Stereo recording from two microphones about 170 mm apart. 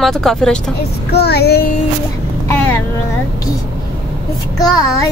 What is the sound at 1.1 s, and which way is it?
Child singing, 70° left (ahead or behind).